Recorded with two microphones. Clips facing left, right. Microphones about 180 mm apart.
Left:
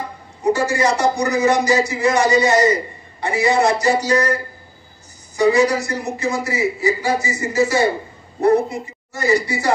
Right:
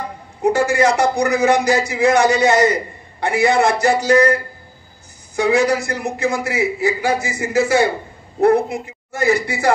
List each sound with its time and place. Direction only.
0.4 s a man's voice: 60° right (ahead or behind)